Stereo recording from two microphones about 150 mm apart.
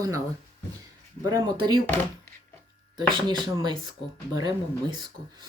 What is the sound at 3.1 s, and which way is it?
Speech, 30° right (ahead or behind).